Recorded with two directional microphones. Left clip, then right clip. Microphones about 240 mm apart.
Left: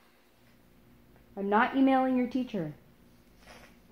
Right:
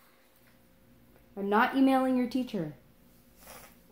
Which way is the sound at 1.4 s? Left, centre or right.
Right.